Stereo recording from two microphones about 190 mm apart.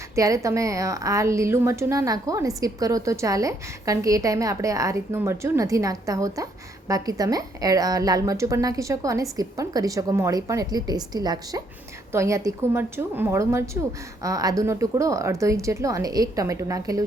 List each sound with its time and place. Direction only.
0.2 s a woman's voice: 15° right (ahead or behind)